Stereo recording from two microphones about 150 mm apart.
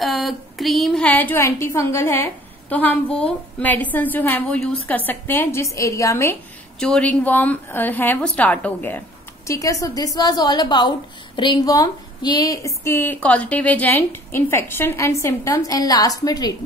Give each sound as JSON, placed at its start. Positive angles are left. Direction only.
{"t": 0.0, "sound": "a woman's voice", "side_deg": 0}
{"t": 6.8, "sound": "a woman's voice", "side_deg": 5}
{"t": 9.5, "sound": "a woman's voice", "side_deg": 20}